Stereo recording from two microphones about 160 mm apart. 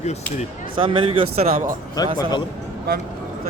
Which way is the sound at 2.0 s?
25° left (ahead or behind).